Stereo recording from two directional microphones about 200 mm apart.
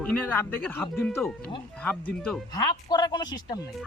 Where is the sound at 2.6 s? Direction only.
20° left (ahead or behind).